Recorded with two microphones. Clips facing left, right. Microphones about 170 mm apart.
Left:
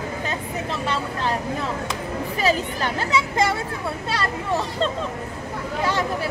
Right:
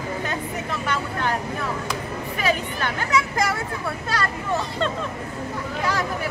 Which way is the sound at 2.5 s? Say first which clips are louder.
Right 1 dB; 30° left (ahead or behind).